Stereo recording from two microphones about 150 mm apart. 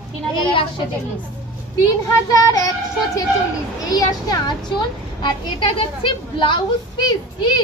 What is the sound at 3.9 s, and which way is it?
A woman's voice, 25° left (ahead or behind).